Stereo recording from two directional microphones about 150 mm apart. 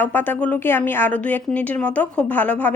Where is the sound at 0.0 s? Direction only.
10° left (ahead or behind).